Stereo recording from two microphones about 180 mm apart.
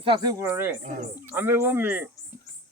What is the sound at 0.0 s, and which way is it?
Speech, 25° right (ahead or behind).